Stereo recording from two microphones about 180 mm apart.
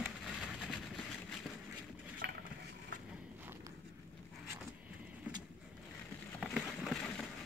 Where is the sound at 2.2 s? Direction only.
60° right (ahead or behind).